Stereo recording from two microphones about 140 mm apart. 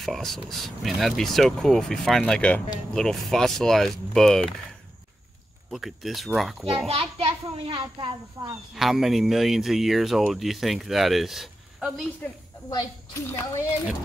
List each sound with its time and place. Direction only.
0.0 s speech: centre (ahead or behind)
5.7 s speech: centre (ahead or behind)
6.9 s speech: 45° right (ahead or behind); by 8.5 s 30° right (ahead or behind)
8.7 s speech: centre (ahead or behind)
12.6 s a woman's voice: 25° left (ahead or behind)